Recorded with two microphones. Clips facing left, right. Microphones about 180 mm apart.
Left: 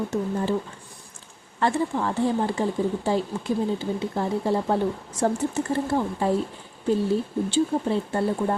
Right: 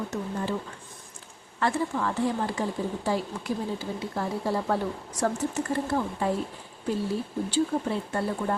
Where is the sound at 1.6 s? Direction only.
25° left (ahead or behind).